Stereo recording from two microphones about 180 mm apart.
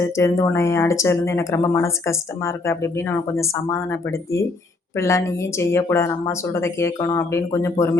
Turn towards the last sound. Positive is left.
turn(degrees=15)  # may be behind; listen again after turning